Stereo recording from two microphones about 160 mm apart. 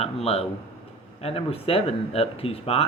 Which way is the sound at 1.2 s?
35° left (ahead or behind).